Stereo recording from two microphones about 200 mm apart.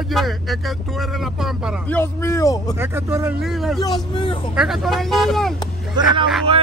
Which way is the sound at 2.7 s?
10° right (ahead or behind).